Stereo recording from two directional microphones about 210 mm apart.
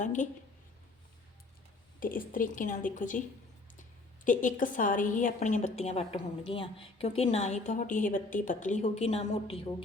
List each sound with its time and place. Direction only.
0.0 s a woman's voice: 35° left (ahead or behind)
2.0 s a woman's voice: 40° left (ahead or behind)